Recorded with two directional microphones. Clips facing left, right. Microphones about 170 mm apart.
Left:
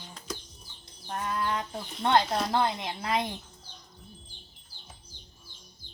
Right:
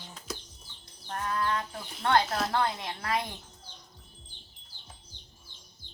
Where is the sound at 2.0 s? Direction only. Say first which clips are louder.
Left 1 dB; 20° left (ahead or behind).